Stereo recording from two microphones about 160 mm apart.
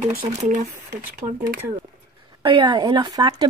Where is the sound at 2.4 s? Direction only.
30° right (ahead or behind).